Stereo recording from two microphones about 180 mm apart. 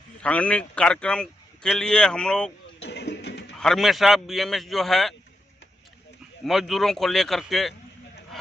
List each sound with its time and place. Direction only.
0.2 s a man's voice: 5° left (ahead or behind)
2.8 s a sound: 70° left (ahead or behind)
3.5 s a man's voice: centre (ahead or behind)
6.4 s a man's voice: centre (ahead or behind)